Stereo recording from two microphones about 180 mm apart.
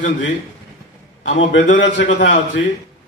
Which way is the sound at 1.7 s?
90° left.